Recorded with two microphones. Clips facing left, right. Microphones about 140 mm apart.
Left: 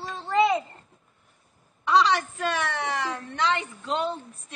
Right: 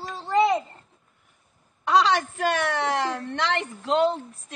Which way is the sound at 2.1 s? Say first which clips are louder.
Right 3 dB; 70° right (ahead or behind).